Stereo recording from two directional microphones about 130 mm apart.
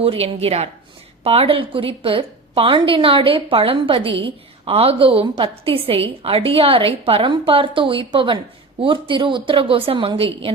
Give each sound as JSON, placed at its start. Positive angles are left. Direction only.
{"t": 0.0, "sound": "a woman's voice", "side_deg": -50}